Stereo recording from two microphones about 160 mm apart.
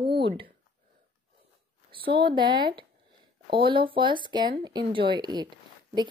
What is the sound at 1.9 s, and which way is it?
A woman's voice, 30° right (ahead or behind).